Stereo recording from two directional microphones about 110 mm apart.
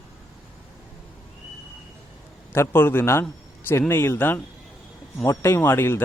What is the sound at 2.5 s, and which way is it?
Speech, 20° left (ahead or behind).